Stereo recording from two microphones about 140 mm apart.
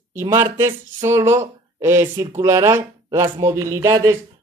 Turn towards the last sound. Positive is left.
turn(degrees=-25)  # may be behind; listen again after turning